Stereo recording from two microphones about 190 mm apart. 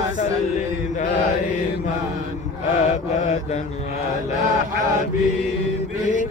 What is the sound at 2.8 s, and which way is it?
Mantra, 40° left (ahead or behind).